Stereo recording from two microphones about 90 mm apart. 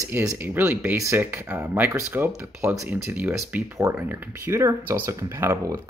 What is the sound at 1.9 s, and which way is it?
Speech, 35° right (ahead or behind).